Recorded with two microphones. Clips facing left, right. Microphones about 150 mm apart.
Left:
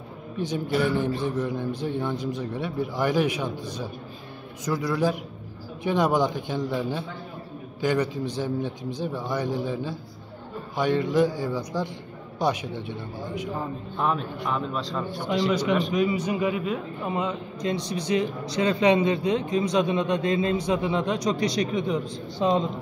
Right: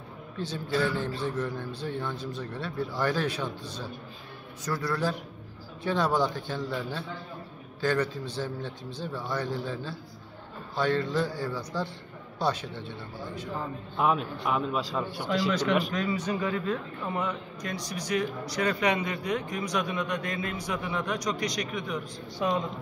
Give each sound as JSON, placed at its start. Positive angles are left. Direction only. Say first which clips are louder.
{"t": 0.4, "sound": "speech", "louder": "left 4 dB", "side_deg": 15}
{"t": 13.9, "sound": "a man's voice", "louder": "right 1 dB", "side_deg": -5}
{"t": 15.5, "sound": "a man's voice", "louder": "left 3 dB", "side_deg": 10}